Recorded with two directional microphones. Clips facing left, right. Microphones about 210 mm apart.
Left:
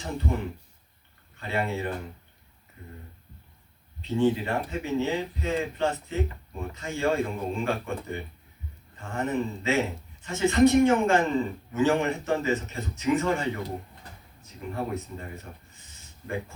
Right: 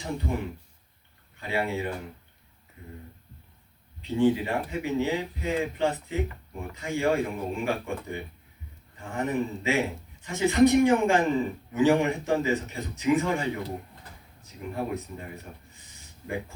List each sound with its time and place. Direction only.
0.0 s a man's voice: 15° right (ahead or behind)
1.4 s a man's voice: 15° right (ahead or behind)
4.1 s a man's voice: 15° right (ahead or behind)
14.7 s a man's voice: 15° right (ahead or behind)